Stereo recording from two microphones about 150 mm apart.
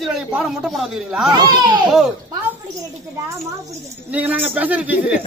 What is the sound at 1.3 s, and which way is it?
Speech, 30° right (ahead or behind).